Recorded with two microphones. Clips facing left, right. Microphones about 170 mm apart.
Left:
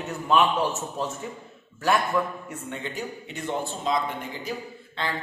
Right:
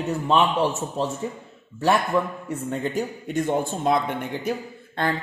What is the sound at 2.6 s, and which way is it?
Speech, 40° right (ahead or behind).